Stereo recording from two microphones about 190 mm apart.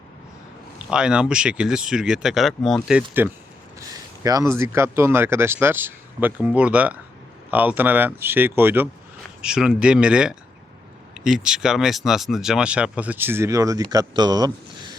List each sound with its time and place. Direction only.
0.8 s speech: 5° right (ahead or behind)
3.8 s speech: 20° right (ahead or behind)